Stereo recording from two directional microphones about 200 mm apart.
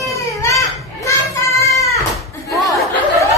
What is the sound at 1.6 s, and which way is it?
Goat, 15° left (ahead or behind).